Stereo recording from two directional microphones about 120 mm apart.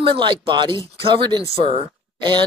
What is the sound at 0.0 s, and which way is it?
Speech, 45° right (ahead or behind).